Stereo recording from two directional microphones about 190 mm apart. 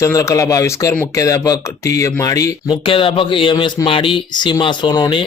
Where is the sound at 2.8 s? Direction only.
30° left (ahead or behind).